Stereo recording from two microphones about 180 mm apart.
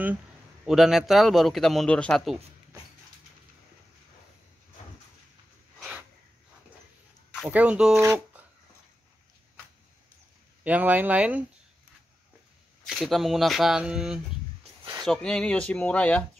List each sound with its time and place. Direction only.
0.7 s a man's voice: centre (ahead or behind)
5.8 s a sound: 5° right (ahead or behind)
7.4 s speech: 10° right (ahead or behind)
10.6 s speech: 10° right (ahead or behind)
12.8 s a man's voice: centre (ahead or behind)
14.6 s a sound: 25° right (ahead or behind)
15.0 s speech: 5° left (ahead or behind)